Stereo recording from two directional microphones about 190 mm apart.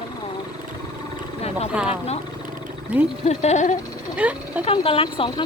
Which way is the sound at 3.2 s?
35° left (ahead or behind).